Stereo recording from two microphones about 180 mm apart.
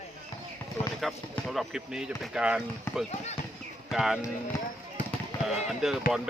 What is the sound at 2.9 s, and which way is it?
Speech, 15° left (ahead or behind).